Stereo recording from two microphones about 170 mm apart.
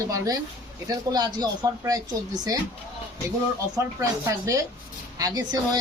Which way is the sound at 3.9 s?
20° right (ahead or behind).